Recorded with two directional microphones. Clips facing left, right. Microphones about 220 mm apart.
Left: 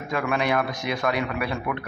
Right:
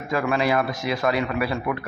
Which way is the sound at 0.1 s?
Centre (ahead or behind).